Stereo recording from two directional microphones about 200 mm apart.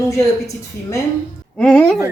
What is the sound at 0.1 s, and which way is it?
Speech, 15° left (ahead or behind).